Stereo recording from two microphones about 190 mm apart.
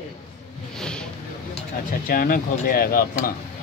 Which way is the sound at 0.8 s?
5° left (ahead or behind).